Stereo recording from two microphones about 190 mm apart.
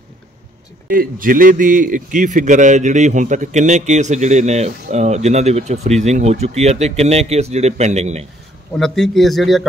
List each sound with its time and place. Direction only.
0.8 s a man's voice: 50° right (ahead or behind)
8.7 s a man's voice: centre (ahead or behind)